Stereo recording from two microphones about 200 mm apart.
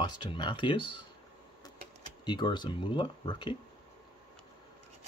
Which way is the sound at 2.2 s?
20° left (ahead or behind).